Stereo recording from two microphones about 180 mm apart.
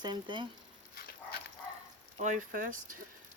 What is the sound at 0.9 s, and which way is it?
Pig, 60° left (ahead or behind).